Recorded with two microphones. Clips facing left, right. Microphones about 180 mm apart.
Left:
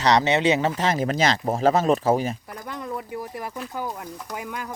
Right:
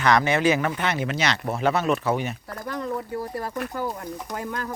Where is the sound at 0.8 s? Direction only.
35° left (ahead or behind).